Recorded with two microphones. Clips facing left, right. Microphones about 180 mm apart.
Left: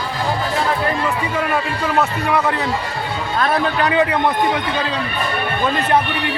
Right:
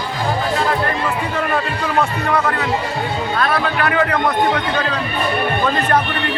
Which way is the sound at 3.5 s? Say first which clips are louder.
Left 1 dB; 20° left (ahead or behind).